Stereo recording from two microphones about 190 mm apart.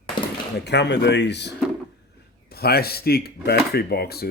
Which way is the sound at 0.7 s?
65° left (ahead or behind).